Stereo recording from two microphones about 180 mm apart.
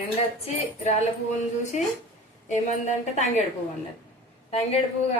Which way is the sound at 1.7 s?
40° left (ahead or behind).